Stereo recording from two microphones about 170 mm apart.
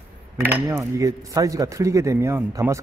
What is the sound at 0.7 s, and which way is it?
A man's voice, 20° right (ahead or behind).